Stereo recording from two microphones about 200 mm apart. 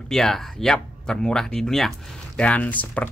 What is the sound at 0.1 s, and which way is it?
Speech, centre (ahead or behind).